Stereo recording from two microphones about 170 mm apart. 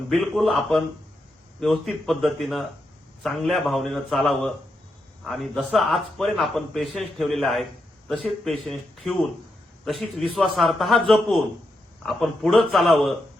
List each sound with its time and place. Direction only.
0.1 s a man's voice: centre (ahead or behind)